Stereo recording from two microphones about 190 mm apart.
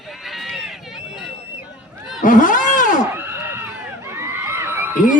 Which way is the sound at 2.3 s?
45° left (ahead or behind).